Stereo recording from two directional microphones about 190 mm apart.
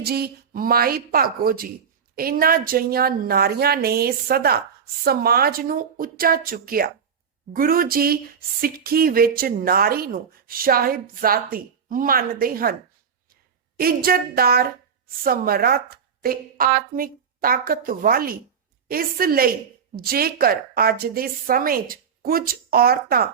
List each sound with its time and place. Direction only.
0.0 s a woman's voice: 55° right (ahead or behind)